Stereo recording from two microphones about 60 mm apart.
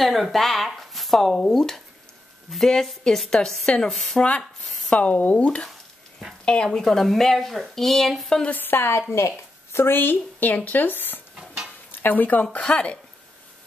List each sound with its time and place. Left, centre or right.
0.0 s a woman's voice: centre
4.8 s a sound: centre
5.1 s speech: left; by 8.1 s centre
8.5 s a woman's voice: left
11.3 s dishes: centre
12.0 s speech: left